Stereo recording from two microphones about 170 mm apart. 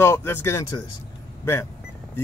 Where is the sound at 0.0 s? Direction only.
15° left (ahead or behind).